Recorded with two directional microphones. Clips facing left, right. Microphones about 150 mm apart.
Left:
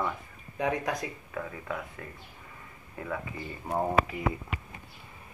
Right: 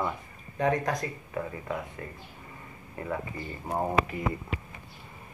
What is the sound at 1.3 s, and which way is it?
Speech, 15° right (ahead or behind).